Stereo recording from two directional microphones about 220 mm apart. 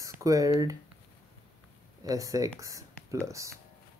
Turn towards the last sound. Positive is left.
turn(degrees=-15)  # may be behind; listen again after turning